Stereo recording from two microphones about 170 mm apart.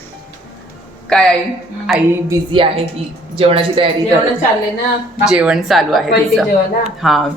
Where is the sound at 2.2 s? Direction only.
30° right (ahead or behind).